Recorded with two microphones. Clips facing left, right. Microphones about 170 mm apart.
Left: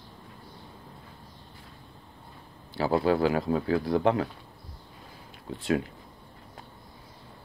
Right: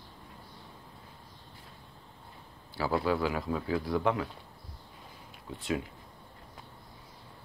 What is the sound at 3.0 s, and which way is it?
Speech, 60° left (ahead or behind).